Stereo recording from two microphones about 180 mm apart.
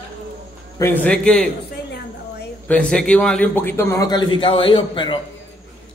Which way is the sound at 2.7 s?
5° left (ahead or behind).